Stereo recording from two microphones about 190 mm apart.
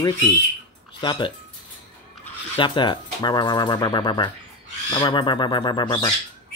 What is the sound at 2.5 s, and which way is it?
Speech, 25° left (ahead or behind).